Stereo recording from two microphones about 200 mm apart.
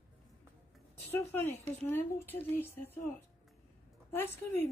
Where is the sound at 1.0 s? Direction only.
10° left (ahead or behind).